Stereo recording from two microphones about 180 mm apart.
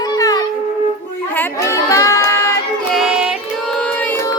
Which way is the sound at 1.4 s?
15° left (ahead or behind).